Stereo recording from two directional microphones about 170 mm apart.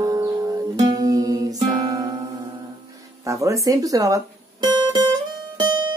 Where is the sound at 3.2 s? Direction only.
20° right (ahead or behind).